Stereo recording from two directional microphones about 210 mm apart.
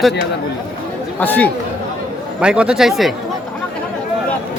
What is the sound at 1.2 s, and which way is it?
Speech, 10° left (ahead or behind).